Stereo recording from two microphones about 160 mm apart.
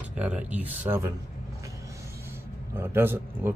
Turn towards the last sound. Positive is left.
turn(degrees=-15)  # may be behind; listen again after turning